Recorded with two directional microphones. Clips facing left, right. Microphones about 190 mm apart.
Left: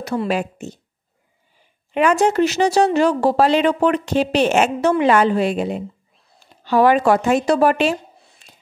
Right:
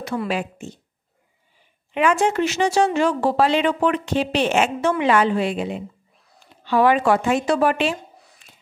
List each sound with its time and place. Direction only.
0.0 s speech: 40° left (ahead or behind)
2.0 s speech: 40° left (ahead or behind)